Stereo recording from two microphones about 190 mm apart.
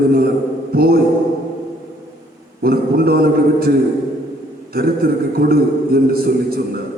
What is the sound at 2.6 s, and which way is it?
A man's voice, 50° right (ahead or behind).